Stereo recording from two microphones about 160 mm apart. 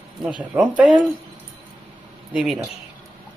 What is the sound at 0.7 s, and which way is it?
Speech, 5° right (ahead or behind).